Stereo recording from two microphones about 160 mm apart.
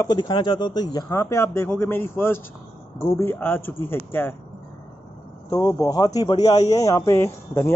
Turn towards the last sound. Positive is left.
turn(degrees=15)  # may be behind; listen again after turning